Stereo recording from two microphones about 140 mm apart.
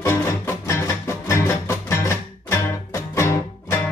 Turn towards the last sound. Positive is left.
turn(degrees=20)  # may be behind; listen again after turning